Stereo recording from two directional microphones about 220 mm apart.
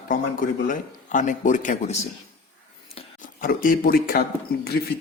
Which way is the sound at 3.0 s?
40° left (ahead or behind).